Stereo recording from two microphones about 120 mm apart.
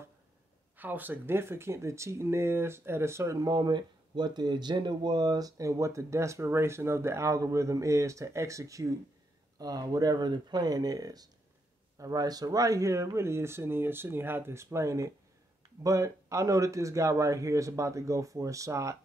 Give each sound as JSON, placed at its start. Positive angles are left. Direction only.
{"t": 0.7, "sound": "speech", "side_deg": -15}